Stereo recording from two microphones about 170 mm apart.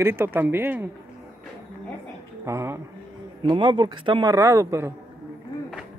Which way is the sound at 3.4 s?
25° right (ahead or behind).